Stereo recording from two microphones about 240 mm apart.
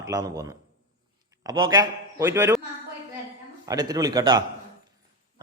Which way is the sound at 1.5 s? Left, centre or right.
Centre.